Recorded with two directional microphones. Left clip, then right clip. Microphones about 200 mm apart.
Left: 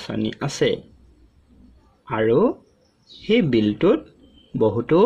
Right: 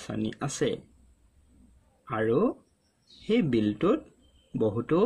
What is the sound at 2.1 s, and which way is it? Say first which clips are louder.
Speech: left 8 dB; 15° right (ahead or behind).